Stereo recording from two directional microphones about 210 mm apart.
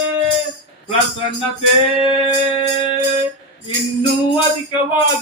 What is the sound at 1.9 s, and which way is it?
Music, 25° left (ahead or behind).